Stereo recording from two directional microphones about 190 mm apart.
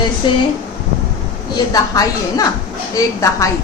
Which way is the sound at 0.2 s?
25° left (ahead or behind).